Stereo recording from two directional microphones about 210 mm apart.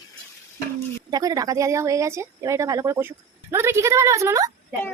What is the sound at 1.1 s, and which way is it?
Speech, 15° right (ahead or behind).